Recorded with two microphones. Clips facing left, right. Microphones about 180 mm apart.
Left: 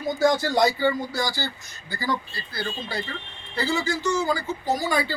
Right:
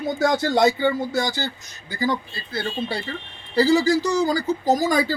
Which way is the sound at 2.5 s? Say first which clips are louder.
Right 4 dB; 30° right (ahead or behind).